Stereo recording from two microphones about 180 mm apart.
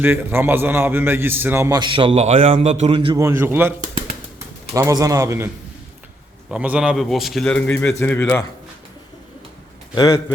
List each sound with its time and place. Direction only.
0.0 s a man's voice: 10° right (ahead or behind); by 3.2 s 30° right (ahead or behind)
3.2 s a man's voice: 15° right (ahead or behind)
6.5 s a man's voice: 5° right (ahead or behind); by 8.4 s 10° left (ahead or behind)
9.9 s a man's voice: 20° left (ahead or behind)